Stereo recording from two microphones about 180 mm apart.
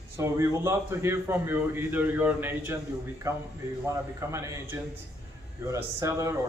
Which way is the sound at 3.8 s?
15° right (ahead or behind).